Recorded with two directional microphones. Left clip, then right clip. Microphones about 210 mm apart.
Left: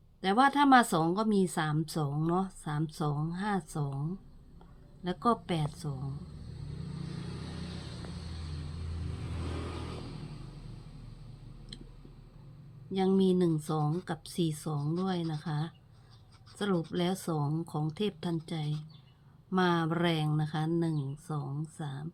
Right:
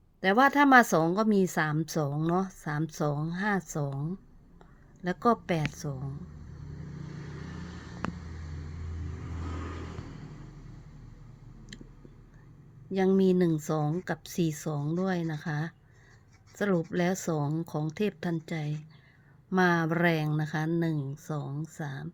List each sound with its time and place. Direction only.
0.2 s a woman's voice: 30° right (ahead or behind)
5.0 s a woman's voice: 30° right (ahead or behind)
12.9 s a woman's voice: 30° right (ahead or behind)